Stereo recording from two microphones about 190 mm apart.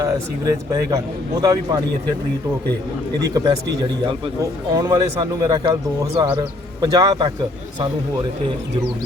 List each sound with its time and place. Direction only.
0.0 s a man's voice: 15° right (ahead or behind)
3.2 s speech: 20° right (ahead or behind)
4.7 s speech: 20° right (ahead or behind)